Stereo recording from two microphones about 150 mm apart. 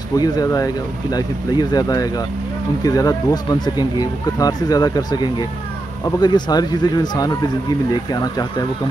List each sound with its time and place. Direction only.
0.2 s speech: 25° left (ahead or behind)